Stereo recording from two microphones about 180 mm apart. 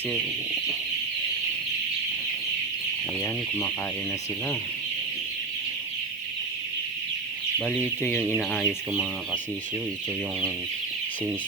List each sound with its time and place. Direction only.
8.4 s speech: centre (ahead or behind)